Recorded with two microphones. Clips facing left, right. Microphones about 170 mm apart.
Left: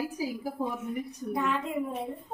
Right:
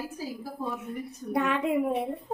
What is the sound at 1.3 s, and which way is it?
Speech, 65° right (ahead or behind).